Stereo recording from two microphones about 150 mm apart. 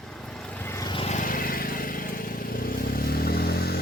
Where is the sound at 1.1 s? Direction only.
65° left (ahead or behind).